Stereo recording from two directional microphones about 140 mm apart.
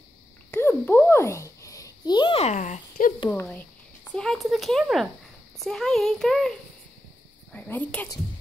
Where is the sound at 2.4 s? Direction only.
55° left (ahead or behind).